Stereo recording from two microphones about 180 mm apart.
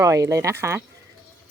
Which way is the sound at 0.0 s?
15° right (ahead or behind).